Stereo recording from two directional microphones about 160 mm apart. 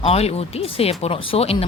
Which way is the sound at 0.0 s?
40° left (ahead or behind).